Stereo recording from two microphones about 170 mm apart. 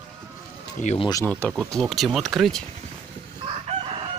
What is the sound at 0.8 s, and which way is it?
Speech, 40° left (ahead or behind).